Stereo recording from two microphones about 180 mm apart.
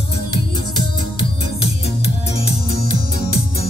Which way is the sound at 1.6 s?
35° left (ahead or behind).